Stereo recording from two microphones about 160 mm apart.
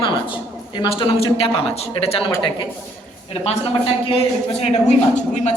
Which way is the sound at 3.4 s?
40° left (ahead or behind).